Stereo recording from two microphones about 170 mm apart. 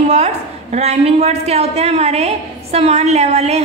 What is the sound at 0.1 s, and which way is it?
A woman's voice, 40° right (ahead or behind).